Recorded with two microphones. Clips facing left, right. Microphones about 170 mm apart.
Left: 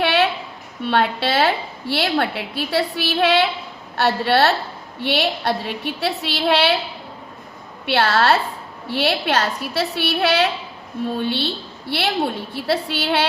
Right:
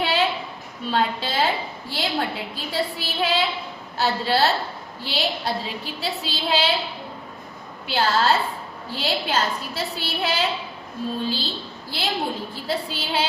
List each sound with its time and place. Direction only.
0.0 s a sound: 70° left (ahead or behind)
0.9 s a woman's voice: 70° left (ahead or behind)
7.9 s a woman's voice: 70° left (ahead or behind)